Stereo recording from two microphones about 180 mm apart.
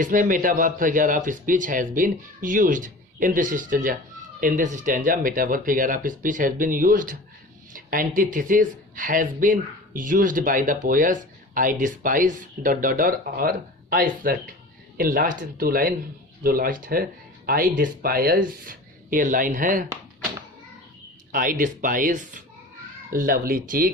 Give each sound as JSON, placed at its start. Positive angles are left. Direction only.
{"t": 0.0, "sound": "speech", "side_deg": -45}
{"t": 21.3, "sound": "speech", "side_deg": -50}